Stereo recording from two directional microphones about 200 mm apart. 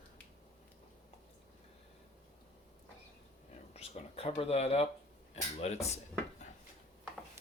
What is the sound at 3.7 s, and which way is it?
Speech, 30° left (ahead or behind).